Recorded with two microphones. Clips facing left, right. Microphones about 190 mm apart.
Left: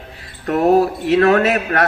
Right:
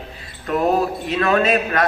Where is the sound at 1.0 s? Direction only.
70° left (ahead or behind).